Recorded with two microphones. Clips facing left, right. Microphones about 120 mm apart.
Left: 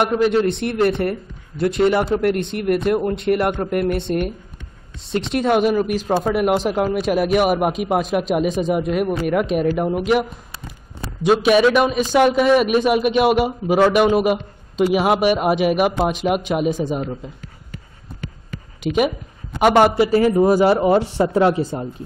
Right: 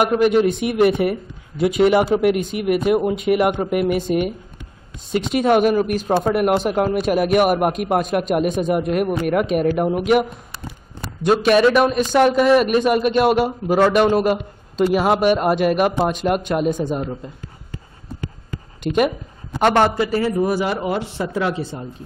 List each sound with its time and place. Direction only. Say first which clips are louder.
0.0 s a man's voice: right 1 dB; 5° right (ahead or behind)
11.2 s speech: even; 5° left (ahead or behind)
18.8 s a man's voice: even; 5° left (ahead or behind)
20.2 s a man's voice: left 6 dB; 25° left (ahead or behind)